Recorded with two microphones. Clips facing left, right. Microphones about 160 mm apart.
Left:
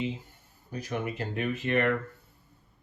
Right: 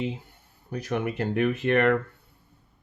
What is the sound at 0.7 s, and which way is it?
Speech, 65° right (ahead or behind).